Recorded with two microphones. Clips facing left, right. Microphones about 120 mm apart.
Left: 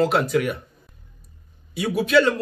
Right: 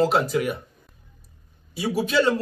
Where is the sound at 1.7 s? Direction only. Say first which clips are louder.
Left 3 dB; 30° right (ahead or behind).